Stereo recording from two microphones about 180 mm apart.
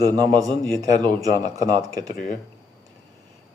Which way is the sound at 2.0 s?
50° left (ahead or behind).